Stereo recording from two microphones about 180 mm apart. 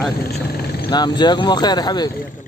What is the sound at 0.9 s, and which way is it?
Speech, 25° left (ahead or behind).